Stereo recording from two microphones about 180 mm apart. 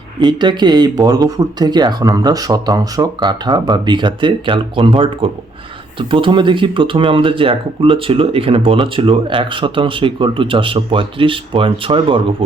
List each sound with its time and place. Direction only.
0.2 s speech: 25° right (ahead or behind)